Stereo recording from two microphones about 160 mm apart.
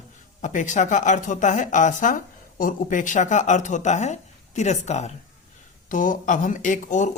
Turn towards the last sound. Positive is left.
turn(degrees=50)  # may be behind; listen again after turning